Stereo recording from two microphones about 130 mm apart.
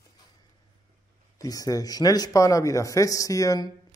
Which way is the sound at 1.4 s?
25° left (ahead or behind).